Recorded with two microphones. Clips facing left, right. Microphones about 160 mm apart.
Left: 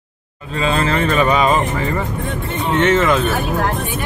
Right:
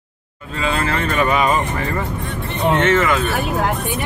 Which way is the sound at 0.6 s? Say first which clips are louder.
Left 3 dB; 25° left (ahead or behind).